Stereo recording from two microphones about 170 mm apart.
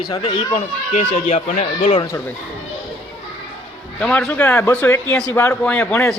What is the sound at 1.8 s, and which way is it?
Speech, 25° left (ahead or behind).